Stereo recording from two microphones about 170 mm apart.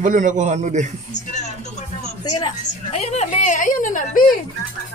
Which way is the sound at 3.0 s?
40° left (ahead or behind).